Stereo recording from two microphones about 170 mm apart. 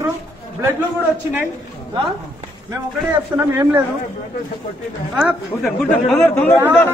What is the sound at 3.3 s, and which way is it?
Speech, 15° right (ahead or behind).